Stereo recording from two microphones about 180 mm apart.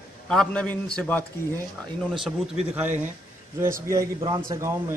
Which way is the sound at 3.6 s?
15° right (ahead or behind).